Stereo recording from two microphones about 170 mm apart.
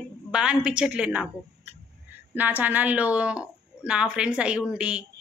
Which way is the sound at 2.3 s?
10° right (ahead or behind).